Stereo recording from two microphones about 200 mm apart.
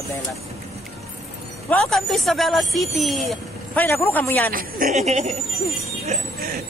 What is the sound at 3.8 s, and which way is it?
Speech, 10° left (ahead or behind).